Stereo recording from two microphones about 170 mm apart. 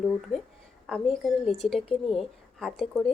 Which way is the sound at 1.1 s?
Centre (ahead or behind).